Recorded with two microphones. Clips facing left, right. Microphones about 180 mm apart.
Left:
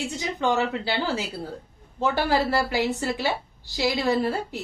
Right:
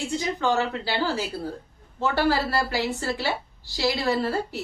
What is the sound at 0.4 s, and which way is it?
Speech, 20° left (ahead or behind).